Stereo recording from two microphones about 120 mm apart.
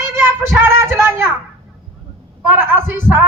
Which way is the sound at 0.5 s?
20° right (ahead or behind).